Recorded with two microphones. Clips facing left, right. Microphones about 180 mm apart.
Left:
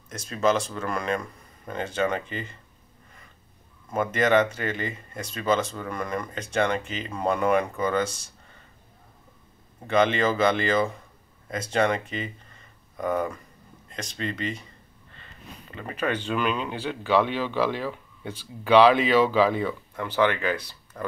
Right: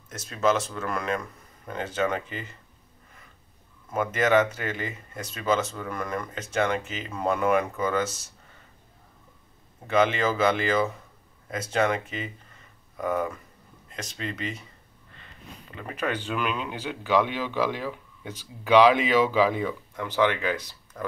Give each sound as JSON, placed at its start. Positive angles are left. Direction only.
{"t": 0.1, "sound": "speech", "side_deg": -5}
{"t": 3.9, "sound": "speech", "side_deg": -5}
{"t": 9.8, "sound": "speech", "side_deg": -5}
{"t": 15.7, "sound": "speech", "side_deg": -5}
{"t": 20.5, "sound": "speech", "side_deg": 10}